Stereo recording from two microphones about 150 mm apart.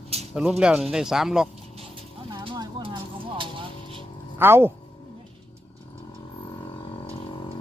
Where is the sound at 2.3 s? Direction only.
30° right (ahead or behind).